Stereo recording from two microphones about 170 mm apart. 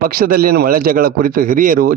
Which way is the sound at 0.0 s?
60° right (ahead or behind).